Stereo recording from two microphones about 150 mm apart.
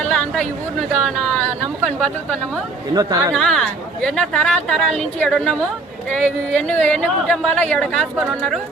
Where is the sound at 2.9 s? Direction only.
25° right (ahead or behind).